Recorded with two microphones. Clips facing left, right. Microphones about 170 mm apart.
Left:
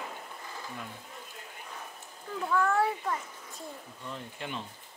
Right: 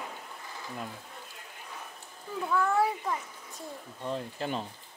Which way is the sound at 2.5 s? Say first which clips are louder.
Even; 10° right (ahead or behind).